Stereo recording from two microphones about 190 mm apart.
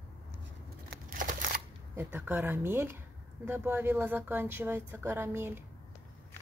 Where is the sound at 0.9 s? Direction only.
50° right (ahead or behind).